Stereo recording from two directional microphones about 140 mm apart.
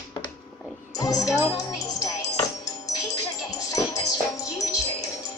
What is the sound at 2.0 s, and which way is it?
Music, 25° left (ahead or behind).